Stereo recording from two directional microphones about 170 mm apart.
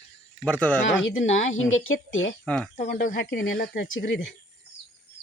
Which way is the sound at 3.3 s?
80° left.